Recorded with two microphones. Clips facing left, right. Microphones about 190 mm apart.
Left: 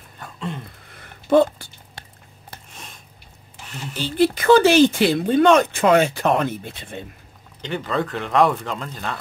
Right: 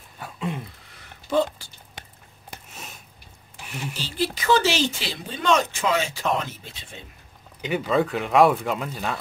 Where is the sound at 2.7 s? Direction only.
5° right (ahead or behind).